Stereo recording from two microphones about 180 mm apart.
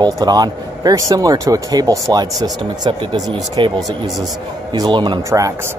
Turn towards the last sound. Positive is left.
turn(degrees=-15)  # may be behind; listen again after turning